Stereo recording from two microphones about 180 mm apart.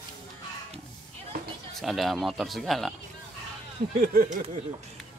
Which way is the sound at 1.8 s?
Centre (ahead or behind).